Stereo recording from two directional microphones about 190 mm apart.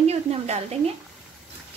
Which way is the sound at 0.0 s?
35° right (ahead or behind).